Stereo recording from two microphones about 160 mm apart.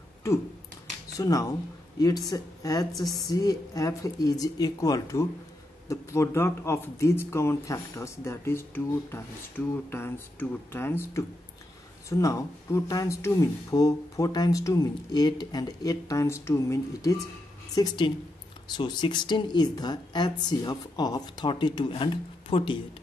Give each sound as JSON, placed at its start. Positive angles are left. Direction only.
{"t": 1.1, "sound": "speech", "side_deg": 20}